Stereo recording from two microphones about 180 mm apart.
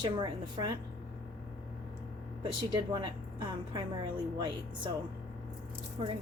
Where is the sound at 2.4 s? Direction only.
25° right (ahead or behind).